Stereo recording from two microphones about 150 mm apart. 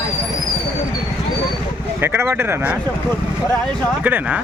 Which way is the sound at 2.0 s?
15° right (ahead or behind).